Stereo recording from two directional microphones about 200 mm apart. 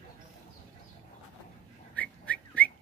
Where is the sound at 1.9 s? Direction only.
5° left (ahead or behind).